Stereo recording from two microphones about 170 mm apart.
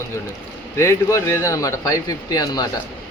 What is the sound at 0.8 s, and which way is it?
Speech, 15° left (ahead or behind).